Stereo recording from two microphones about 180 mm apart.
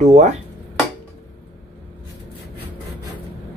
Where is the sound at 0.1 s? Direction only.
40° right (ahead or behind).